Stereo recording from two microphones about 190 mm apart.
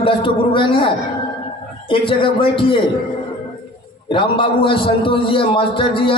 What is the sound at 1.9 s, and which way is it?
Speech, 25° left (ahead or behind).